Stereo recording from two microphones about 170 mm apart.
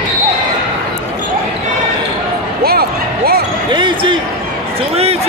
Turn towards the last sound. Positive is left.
turn(degrees=-35)  # may be behind; listen again after turning